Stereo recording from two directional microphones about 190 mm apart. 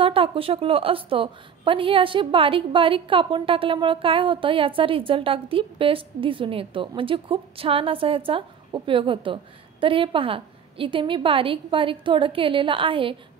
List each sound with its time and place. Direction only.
0.0 s a woman's voice: 30° right (ahead or behind)